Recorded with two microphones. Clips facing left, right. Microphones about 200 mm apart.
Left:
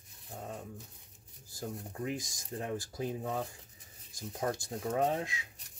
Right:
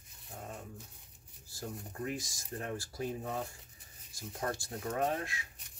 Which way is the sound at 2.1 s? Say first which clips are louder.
Left 2 dB; 20° left (ahead or behind).